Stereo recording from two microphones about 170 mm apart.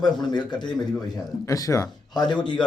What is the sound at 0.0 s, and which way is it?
A man's voice, 25° left (ahead or behind).